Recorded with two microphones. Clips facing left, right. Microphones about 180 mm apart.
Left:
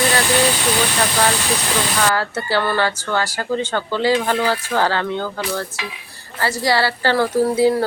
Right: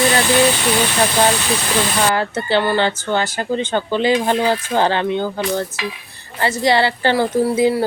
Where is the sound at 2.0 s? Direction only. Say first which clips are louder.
Right 2 dB; 20° right (ahead or behind).